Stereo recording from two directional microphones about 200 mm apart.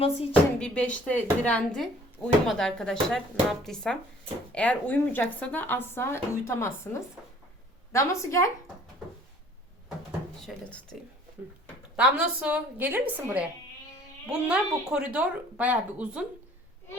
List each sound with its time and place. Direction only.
0.0 s speech: 30° left (ahead or behind)
0.6 s speech: 5° left (ahead or behind)
7.9 s speech: 15° left (ahead or behind)
10.1 s speech: centre (ahead or behind)
11.9 s a woman's voice: 5° right (ahead or behind)